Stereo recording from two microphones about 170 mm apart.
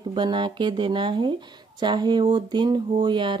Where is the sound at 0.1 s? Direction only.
25° right (ahead or behind).